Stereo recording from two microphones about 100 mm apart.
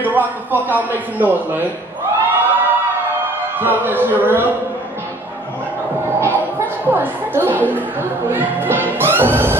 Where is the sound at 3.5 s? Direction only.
20° right (ahead or behind).